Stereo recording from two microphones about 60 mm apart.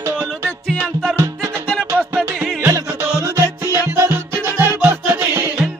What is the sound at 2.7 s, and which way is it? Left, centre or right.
Music, right.